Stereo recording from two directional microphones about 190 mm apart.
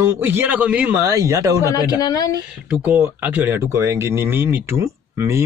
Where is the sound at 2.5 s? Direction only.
5° right (ahead or behind).